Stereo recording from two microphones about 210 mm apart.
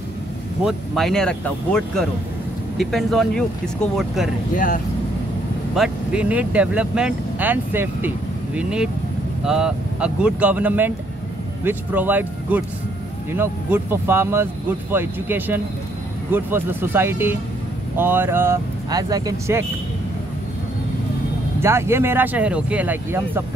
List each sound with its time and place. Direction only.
0.7 s speech: centre (ahead or behind)
4.6 s speech: 40° left (ahead or behind)
5.8 s speech: 5° right (ahead or behind)
21.5 s speech: 10° right (ahead or behind)